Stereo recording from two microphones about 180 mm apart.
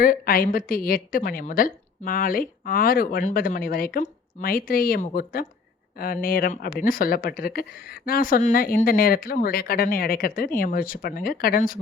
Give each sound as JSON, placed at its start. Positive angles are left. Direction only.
{"t": 0.0, "sound": "a woman's voice", "side_deg": 50}